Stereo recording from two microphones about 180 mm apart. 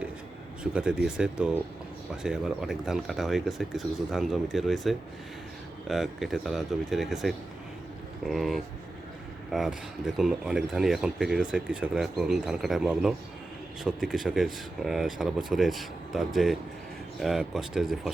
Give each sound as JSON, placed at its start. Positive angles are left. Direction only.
{"t": 0.6, "sound": "speech", "side_deg": -5}